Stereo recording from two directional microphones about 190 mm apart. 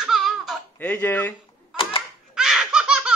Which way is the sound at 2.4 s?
5° right (ahead or behind).